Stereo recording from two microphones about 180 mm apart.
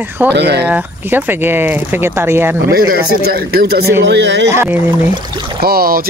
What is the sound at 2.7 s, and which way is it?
Speech, 55° right (ahead or behind).